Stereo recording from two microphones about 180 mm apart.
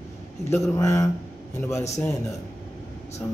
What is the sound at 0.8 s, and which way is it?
A man's voice, 15° left (ahead or behind).